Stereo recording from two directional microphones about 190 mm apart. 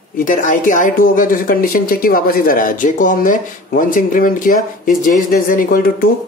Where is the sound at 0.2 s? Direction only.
45° left (ahead or behind).